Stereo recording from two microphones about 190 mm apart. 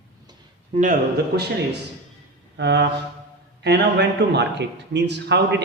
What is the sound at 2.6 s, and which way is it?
A man's voice, 65° right (ahead or behind).